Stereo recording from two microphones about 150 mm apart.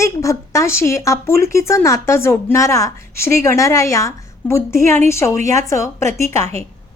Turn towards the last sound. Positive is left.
turn(degrees=20)  # may be behind; listen again after turning